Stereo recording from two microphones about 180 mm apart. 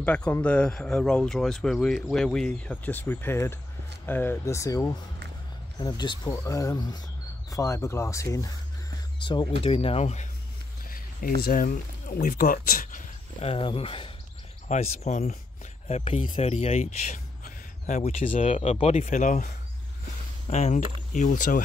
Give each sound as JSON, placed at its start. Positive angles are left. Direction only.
{"t": 0.0, "sound": "speech", "side_deg": 10}
{"t": 11.4, "sound": "speech", "side_deg": 50}
{"t": 13.4, "sound": "speech", "side_deg": 30}